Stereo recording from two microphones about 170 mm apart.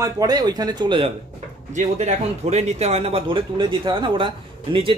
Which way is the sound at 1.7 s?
40° right (ahead or behind).